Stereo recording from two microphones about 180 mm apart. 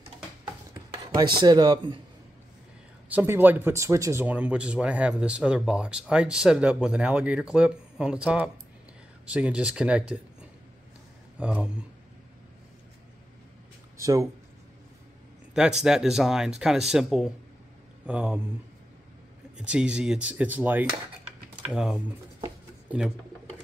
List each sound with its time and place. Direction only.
1.1 s speech: 25° right (ahead or behind)
3.1 s speech: 10° right (ahead or behind)
13.9 s speech: 15° right (ahead or behind)
15.5 s speech: 5° right (ahead or behind)
19.5 s speech: 5° right (ahead or behind)